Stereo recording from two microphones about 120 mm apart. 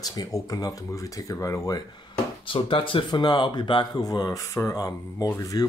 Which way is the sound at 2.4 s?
45° left (ahead or behind).